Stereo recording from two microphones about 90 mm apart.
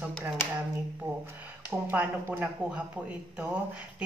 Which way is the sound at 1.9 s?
20° right (ahead or behind).